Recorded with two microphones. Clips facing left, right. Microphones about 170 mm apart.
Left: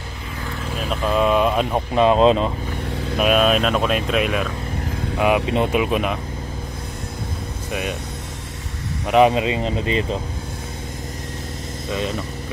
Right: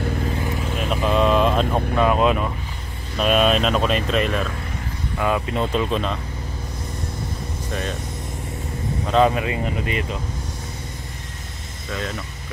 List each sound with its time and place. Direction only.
0.7 s vehicle: centre (ahead or behind)
2.0 s speech: 25° left (ahead or behind)
3.2 s speech: 5° left (ahead or behind)
5.1 s speech: 15° left (ahead or behind)
9.0 s speech: 15° left (ahead or behind)